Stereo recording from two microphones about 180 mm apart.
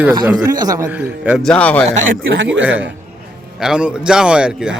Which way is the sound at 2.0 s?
90° right.